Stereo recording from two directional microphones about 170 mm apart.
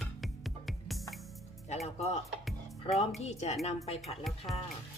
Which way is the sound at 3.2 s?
40° left (ahead or behind).